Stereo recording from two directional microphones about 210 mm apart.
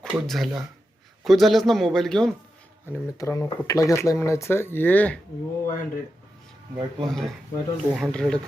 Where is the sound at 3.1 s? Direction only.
15° left (ahead or behind).